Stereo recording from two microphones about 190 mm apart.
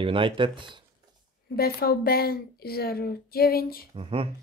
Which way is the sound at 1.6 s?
55° left (ahead or behind).